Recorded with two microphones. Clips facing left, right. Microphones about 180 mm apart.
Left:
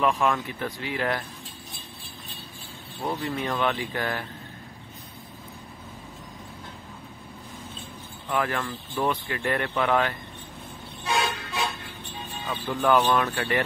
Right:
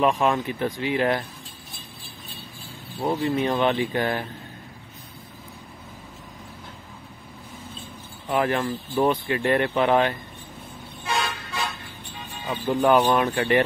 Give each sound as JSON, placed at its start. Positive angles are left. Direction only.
{"t": 0.0, "sound": "speech", "side_deg": -20}
{"t": 3.0, "sound": "speech", "side_deg": -25}
{"t": 8.3, "sound": "speech", "side_deg": -20}
{"t": 12.4, "sound": "speech", "side_deg": -15}